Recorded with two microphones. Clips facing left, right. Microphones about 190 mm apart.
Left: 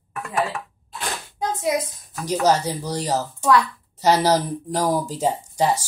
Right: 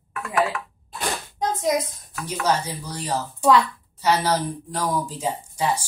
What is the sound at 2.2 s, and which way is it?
A woman's voice, 40° left (ahead or behind).